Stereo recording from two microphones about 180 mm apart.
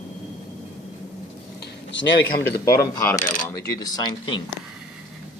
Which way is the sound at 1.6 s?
75° left (ahead or behind).